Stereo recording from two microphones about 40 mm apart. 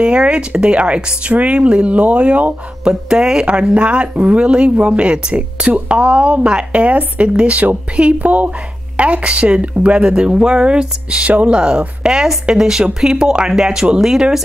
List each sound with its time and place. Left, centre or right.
0.0 s speech: right
2.8 s speech: centre
3.7 s speech: right